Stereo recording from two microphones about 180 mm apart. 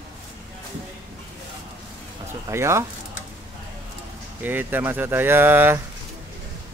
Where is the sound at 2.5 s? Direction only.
15° right (ahead or behind).